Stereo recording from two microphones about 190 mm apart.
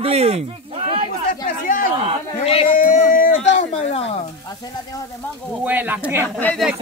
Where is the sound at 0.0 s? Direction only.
30° right (ahead or behind).